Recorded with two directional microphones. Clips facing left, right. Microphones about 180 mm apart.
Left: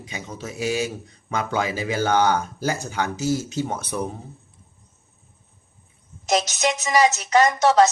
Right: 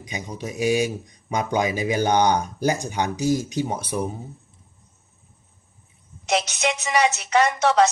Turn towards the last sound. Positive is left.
turn(degrees=40)  # may be behind; listen again after turning